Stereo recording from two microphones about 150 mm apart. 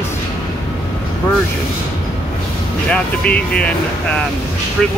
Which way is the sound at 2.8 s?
10° left (ahead or behind).